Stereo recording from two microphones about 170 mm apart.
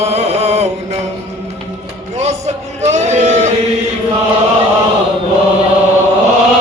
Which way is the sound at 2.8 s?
40° right (ahead or behind).